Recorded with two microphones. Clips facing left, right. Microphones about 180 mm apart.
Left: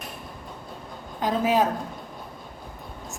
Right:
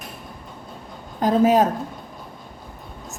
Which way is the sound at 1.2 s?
45° right (ahead or behind).